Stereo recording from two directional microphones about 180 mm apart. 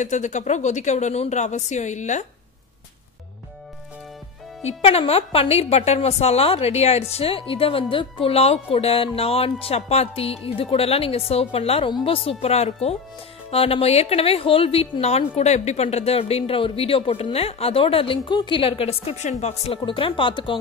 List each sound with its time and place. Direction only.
0.0 s speech: 40° left (ahead or behind)
4.6 s speech: 35° left (ahead or behind)